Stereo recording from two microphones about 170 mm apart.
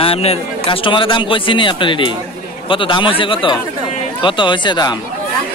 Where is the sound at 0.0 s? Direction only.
35° left (ahead or behind).